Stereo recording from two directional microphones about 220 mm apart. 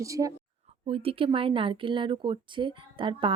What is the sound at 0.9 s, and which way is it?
Speech, 25° right (ahead or behind).